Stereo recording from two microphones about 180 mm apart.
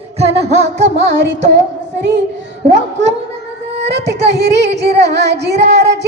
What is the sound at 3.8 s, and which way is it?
Child singing, 70° right (ahead or behind).